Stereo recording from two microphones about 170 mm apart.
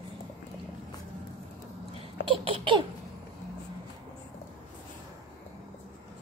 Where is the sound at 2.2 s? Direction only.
30° right (ahead or behind).